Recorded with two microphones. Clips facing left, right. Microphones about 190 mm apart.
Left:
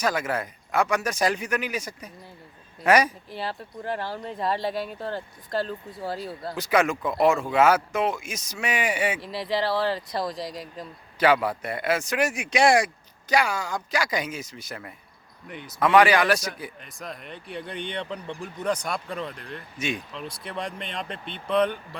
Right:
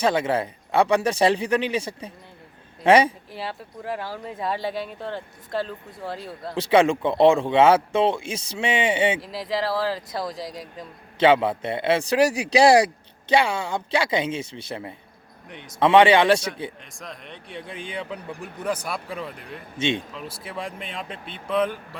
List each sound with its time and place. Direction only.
0.0 s speech: 30° right (ahead or behind)
3.3 s speech: centre (ahead or behind)
6.6 s speech: 30° right (ahead or behind)
9.2 s speech: centre (ahead or behind)
11.2 s speech: 25° right (ahead or behind)
15.4 s speech: centre (ahead or behind)
15.8 s speech: 25° right (ahead or behind)
16.8 s speech: centre (ahead or behind)
19.8 s speech: 25° right (ahead or behind)
20.1 s speech: 5° right (ahead or behind)